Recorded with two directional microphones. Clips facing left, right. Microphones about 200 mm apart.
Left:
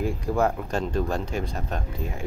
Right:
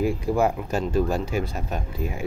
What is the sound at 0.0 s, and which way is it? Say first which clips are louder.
Speech: right 2 dB; 10° right (ahead or behind).